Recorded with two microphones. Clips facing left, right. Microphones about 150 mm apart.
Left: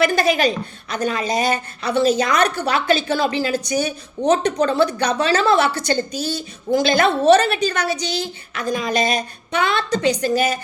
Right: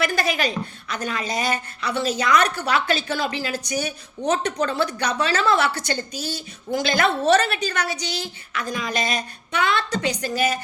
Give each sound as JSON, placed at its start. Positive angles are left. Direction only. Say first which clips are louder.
{"t": 0.0, "sound": "a woman's voice", "louder": "left 6 dB", "side_deg": 20}